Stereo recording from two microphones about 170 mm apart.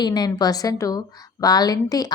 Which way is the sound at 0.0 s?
25° left (ahead or behind).